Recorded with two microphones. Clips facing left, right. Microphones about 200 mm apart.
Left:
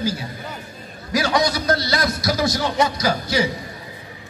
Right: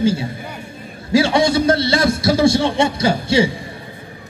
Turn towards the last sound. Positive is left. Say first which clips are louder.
# right 5 dB
turn(degrees=-25)  # may be behind; listen again after turning